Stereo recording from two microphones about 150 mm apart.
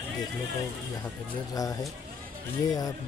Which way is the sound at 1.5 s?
25° left (ahead or behind).